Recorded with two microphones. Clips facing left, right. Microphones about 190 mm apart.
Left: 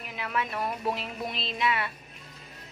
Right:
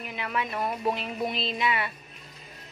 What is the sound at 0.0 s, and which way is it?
Speech, centre (ahead or behind).